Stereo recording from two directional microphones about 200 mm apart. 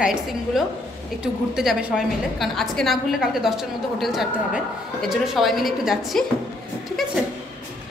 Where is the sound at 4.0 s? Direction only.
Centre (ahead or behind).